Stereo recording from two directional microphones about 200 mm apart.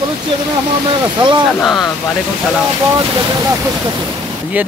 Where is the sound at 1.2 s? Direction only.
25° right (ahead or behind).